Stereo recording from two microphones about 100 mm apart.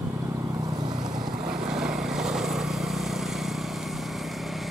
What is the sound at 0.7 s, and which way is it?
Boat, 40° right (ahead or behind).